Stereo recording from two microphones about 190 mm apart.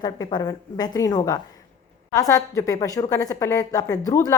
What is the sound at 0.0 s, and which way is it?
A woman's voice, 20° left (ahead or behind).